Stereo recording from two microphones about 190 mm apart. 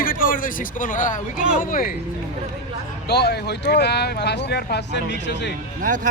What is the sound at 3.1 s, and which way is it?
Speech, 60° left (ahead or behind).